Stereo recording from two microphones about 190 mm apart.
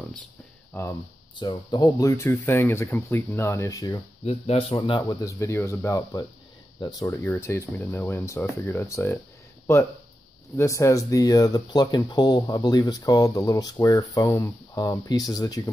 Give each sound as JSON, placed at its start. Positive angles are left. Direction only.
{"t": 0.7, "sound": "speech", "side_deg": 10}
{"t": 1.3, "sound": "speech", "side_deg": 25}
{"t": 4.2, "sound": "speech", "side_deg": 35}
{"t": 10.5, "sound": "speech", "side_deg": 15}